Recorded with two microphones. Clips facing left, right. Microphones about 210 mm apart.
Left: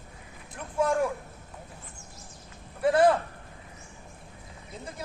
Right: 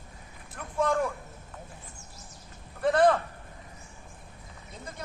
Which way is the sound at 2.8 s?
5° left (ahead or behind).